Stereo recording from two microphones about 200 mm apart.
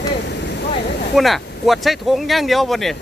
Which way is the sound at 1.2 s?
Centre (ahead or behind).